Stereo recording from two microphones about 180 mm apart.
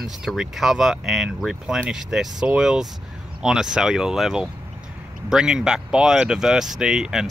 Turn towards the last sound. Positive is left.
turn(degrees=-5)  # may be behind; listen again after turning